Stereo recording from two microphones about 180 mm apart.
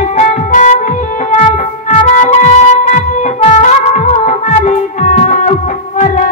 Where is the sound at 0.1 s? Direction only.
40° left (ahead or behind).